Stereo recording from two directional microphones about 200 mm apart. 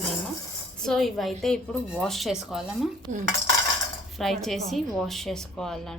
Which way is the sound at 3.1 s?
40° right (ahead or behind).